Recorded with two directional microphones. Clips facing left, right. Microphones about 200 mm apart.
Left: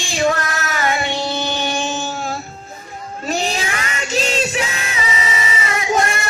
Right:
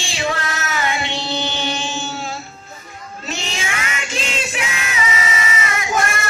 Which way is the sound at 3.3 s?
45° left (ahead or behind).